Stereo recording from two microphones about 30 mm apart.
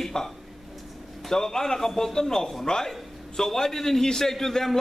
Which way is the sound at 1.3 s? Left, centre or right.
Centre.